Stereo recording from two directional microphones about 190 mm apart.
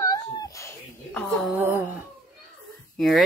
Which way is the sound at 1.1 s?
5° left (ahead or behind).